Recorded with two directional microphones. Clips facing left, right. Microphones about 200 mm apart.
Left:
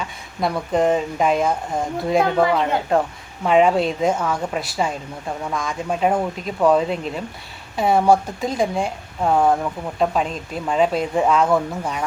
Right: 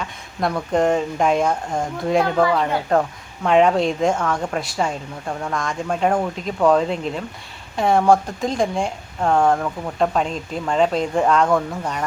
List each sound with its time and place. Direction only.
0.3 s speech: 5° left (ahead or behind)
2.4 s speech: 15° left (ahead or behind)
3.4 s speech: 5° left (ahead or behind)